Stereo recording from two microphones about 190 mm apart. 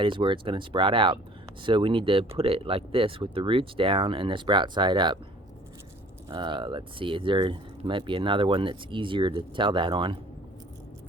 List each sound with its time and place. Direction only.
0.0 s speech: 25° right (ahead or behind)
6.3 s speech: 25° right (ahead or behind)